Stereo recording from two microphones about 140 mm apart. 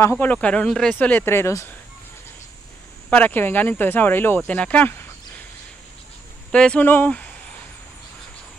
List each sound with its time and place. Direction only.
0.0 s speech: 10° left (ahead or behind)
3.1 s speech: 10° left (ahead or behind)
6.5 s speech: 5° left (ahead or behind)